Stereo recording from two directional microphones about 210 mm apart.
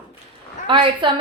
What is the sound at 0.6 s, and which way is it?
Speech, 25° right (ahead or behind).